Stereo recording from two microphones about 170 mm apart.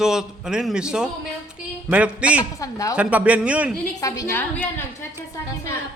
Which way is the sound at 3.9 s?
20° left (ahead or behind).